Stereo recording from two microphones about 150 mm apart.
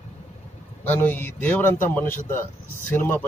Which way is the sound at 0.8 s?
10° left (ahead or behind).